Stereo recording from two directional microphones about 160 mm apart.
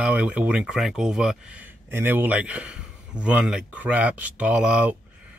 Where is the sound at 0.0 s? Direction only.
10° right (ahead or behind).